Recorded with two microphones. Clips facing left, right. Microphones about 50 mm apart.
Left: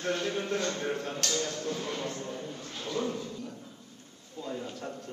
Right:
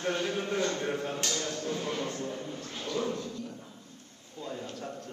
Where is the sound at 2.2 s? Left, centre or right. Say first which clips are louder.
Right 1 dB; centre.